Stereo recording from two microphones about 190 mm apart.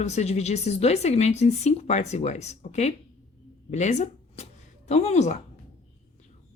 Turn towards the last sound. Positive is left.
turn(degrees=35)  # may be behind; listen again after turning